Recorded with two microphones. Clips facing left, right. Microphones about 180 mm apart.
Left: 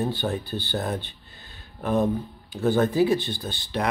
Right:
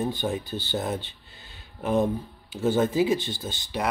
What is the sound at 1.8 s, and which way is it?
Speech, 20° right (ahead or behind).